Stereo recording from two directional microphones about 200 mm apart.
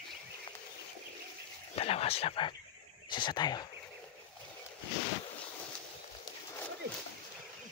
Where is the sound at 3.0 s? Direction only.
20° left (ahead or behind).